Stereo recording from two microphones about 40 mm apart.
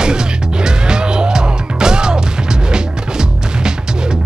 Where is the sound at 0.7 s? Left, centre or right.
Centre.